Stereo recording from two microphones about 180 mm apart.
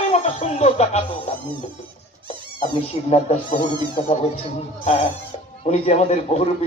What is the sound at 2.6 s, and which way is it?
A man's voice, 35° left (ahead or behind).